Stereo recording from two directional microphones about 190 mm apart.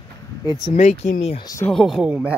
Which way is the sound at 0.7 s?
40° left (ahead or behind).